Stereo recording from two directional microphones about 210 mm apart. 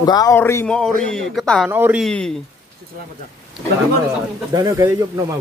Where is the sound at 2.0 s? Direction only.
5° left (ahead or behind).